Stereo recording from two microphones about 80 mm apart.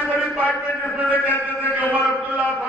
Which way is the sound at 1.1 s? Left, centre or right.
Left.